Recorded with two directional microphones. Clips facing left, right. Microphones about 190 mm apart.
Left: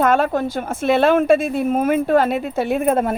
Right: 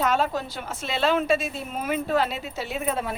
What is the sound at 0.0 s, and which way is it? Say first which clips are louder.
A woman's voice: left 7 dB; 55° left (ahead or behind).